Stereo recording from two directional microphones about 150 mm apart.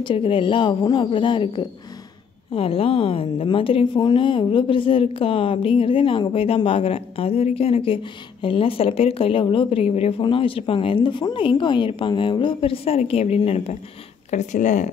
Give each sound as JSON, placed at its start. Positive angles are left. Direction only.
{"t": 0.0, "sound": "a woman's voice", "side_deg": 35}
{"t": 14.3, "sound": "speech", "side_deg": 55}